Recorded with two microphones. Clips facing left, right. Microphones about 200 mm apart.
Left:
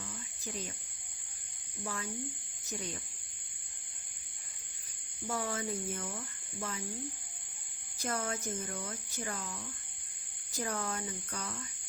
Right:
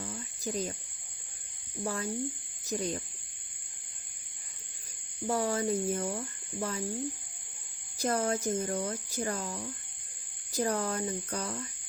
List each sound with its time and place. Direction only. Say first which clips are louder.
0.0 s cricket: right 7 dB; 40° right (ahead or behind)
1.8 s speech: right 7 dB; 35° right (ahead or behind)
5.3 s speech: right 7 dB; 35° right (ahead or behind)
7.9 s speech: right 7 dB; 35° right (ahead or behind)